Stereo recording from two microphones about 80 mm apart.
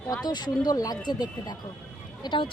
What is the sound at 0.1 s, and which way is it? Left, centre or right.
Speech, left.